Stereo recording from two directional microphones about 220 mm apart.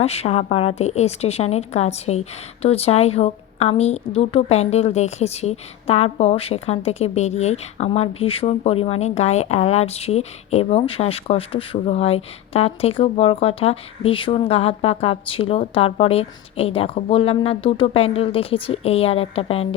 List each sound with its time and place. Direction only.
0.0 s a woman's voice: 30° left (ahead or behind)